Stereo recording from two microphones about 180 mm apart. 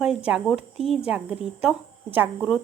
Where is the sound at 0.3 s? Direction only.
5° right (ahead or behind).